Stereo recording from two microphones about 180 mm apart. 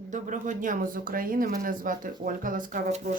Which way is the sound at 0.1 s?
45° right (ahead or behind).